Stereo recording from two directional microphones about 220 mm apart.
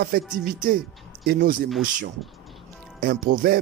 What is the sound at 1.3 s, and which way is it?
Speech, 45° right (ahead or behind).